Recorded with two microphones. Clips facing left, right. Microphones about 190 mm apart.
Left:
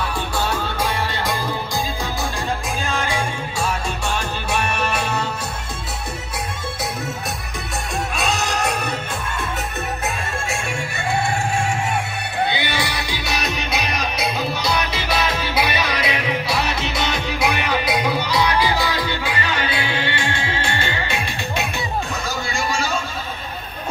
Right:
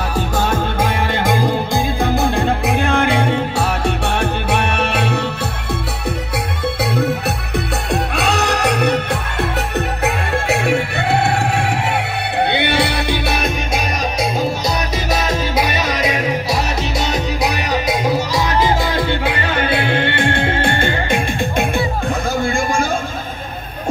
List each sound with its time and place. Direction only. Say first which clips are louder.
0.4 s music: right 4 dB; 50° right (ahead or behind)
6.8 s music: right 10 dB; 60° right (ahead or behind)
22.4 s a sound: right 5 dB; 55° right (ahead or behind)